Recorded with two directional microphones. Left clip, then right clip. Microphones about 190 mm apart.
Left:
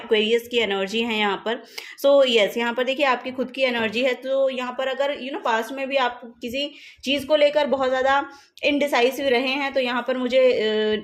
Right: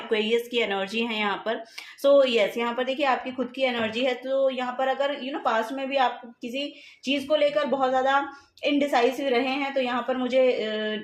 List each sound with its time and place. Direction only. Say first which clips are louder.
0.1 s a woman's voice: left 5 dB; 30° left (ahead or behind); by 11.0 s 45° left (ahead or behind)